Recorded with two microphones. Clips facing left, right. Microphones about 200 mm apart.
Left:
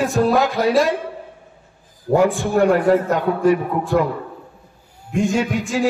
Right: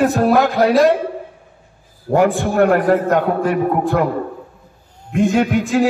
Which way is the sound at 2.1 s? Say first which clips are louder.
Right 1 dB; 55° right (ahead or behind).